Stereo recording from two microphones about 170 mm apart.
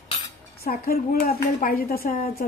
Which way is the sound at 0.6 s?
60° left (ahead or behind).